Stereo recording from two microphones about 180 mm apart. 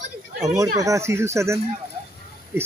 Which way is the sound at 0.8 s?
15° right (ahead or behind).